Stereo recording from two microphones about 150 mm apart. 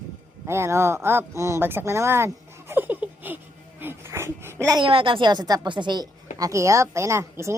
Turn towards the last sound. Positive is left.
turn(degrees=-20)  # may be behind; listen again after turning